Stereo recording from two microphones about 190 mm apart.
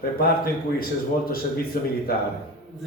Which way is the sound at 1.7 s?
50° left (ahead or behind).